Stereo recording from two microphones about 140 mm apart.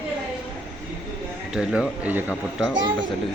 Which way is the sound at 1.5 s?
5° right (ahead or behind).